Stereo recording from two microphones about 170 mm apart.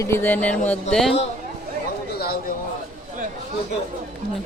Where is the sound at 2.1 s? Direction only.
65° left (ahead or behind).